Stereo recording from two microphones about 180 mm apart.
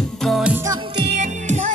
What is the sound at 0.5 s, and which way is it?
Music, 20° right (ahead or behind).